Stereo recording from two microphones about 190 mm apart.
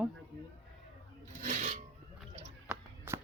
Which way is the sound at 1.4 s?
40° right (ahead or behind).